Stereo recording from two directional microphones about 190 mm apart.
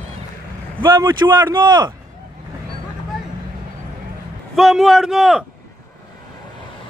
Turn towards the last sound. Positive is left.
turn(degrees=-5)  # may be behind; listen again after turning